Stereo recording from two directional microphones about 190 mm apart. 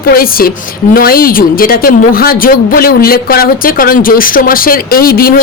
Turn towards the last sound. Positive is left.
turn(degrees=50)  # may be behind; listen again after turning